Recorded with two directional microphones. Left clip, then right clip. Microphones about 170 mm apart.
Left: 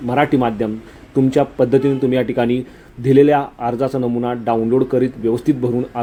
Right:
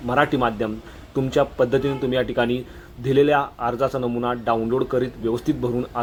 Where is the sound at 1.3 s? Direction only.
15° left (ahead or behind).